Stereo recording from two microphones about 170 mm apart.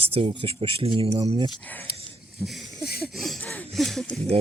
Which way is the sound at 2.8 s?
65° left (ahead or behind).